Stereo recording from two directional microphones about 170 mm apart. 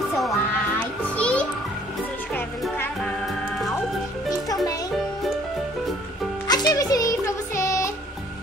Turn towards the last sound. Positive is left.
turn(degrees=15)  # may be behind; listen again after turning